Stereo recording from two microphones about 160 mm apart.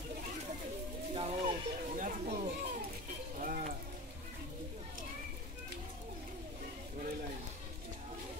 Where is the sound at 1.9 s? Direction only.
55° right (ahead or behind).